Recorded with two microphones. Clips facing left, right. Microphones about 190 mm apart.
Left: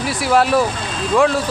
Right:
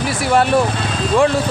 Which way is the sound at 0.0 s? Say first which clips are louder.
Even; centre (ahead or behind).